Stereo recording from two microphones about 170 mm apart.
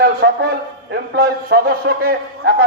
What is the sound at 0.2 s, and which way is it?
Speech, 85° right.